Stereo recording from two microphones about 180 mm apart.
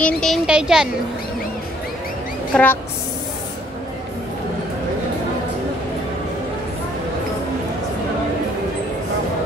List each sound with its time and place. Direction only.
0.0 s speech: centre (ahead or behind)
2.5 s a woman's voice: 10° left (ahead or behind)